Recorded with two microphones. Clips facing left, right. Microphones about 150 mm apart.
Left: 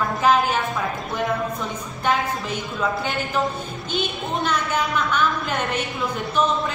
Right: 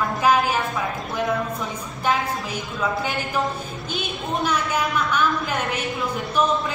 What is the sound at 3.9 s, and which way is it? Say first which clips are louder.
Speech: left 2 dB; 5° right (ahead or behind).